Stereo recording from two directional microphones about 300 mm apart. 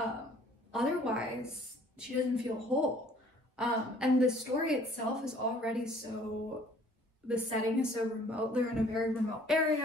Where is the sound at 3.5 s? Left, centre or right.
Centre.